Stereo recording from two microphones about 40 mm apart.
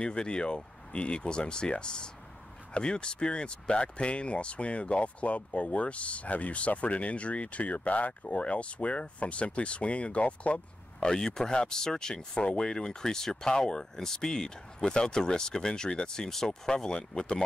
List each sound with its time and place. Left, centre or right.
0.0 s speech: left
11.0 s speech: centre